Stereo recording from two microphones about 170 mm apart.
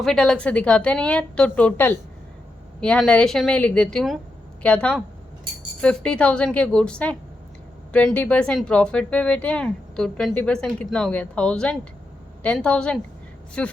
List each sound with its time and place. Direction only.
0.0 s speech: 5° left (ahead or behind)